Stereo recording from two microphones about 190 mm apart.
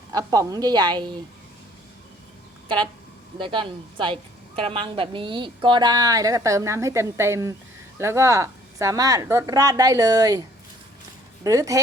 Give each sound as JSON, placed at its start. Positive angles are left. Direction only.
{"t": 0.1, "sound": "speech", "side_deg": -20}
{"t": 2.6, "sound": "speech", "side_deg": -25}
{"t": 11.4, "sound": "speech", "side_deg": -15}